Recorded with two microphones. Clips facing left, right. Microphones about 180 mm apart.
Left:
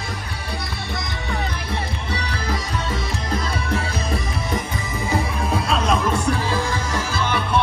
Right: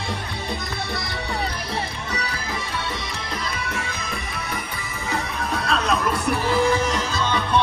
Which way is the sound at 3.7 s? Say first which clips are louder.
Left 6 dB; 35° left (ahead or behind).